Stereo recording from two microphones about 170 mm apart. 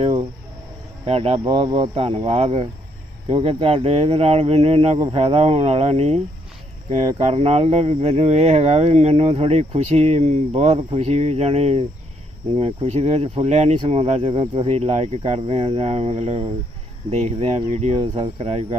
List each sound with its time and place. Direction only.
1.0 s speech: 35° right (ahead or behind)
7.2 s speech: 40° right (ahead or behind)